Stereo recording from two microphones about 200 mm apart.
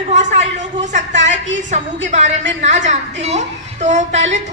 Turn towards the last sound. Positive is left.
turn(degrees=-35)  # may be behind; listen again after turning